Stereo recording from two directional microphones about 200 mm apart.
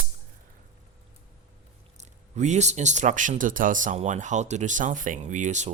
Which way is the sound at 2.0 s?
35° right (ahead or behind).